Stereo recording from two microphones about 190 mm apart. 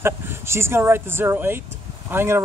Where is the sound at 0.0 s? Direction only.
15° right (ahead or behind).